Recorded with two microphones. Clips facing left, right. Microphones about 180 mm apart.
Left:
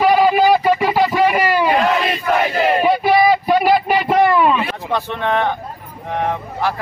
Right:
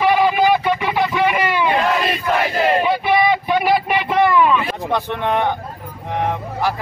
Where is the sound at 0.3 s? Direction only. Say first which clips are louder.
Left 3 dB; 35° left (ahead or behind).